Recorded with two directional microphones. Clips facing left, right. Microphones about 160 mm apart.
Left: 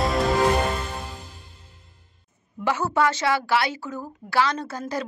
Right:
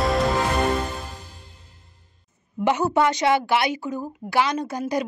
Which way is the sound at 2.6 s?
20° right (ahead or behind).